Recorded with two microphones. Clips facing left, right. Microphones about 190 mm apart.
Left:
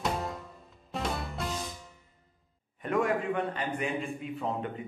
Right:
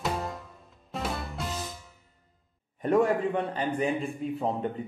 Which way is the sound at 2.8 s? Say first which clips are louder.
Right 5 dB; 35° right (ahead or behind).